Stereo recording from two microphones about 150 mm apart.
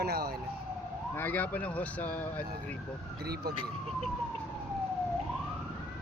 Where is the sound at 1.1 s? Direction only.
15° left (ahead or behind).